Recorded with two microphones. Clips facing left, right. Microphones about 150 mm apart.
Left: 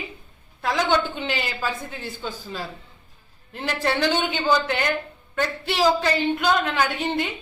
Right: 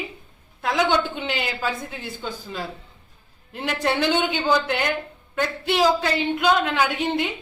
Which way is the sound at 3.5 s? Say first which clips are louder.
Right 1 dB; 5° right (ahead or behind).